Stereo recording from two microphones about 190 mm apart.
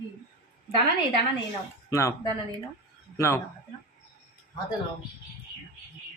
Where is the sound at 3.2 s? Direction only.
15° left (ahead or behind).